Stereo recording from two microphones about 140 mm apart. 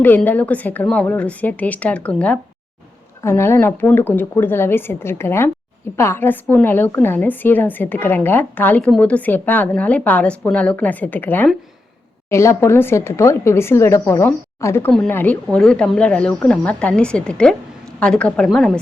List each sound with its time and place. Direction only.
0.0 s a woman's voice: 15° left (ahead or behind)